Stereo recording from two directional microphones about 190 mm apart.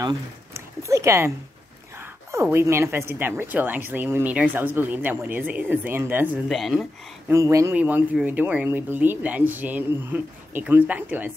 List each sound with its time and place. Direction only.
0.0 s a woman's voice: 15° right (ahead or behind)
6.5 s speech: centre (ahead or behind)
7.2 s a woman's voice: 15° right (ahead or behind)